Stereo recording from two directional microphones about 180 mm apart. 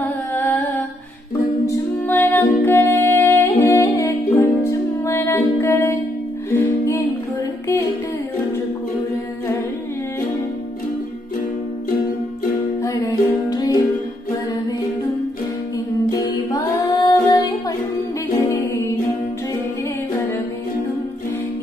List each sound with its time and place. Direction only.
0.3 s music: 10° left (ahead or behind)
12.8 s music: 20° left (ahead or behind)
16.1 s music: 20° left (ahead or behind)